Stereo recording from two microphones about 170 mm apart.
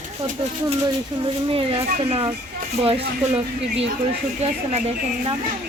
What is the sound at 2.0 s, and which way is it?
Speech, 35° right (ahead or behind).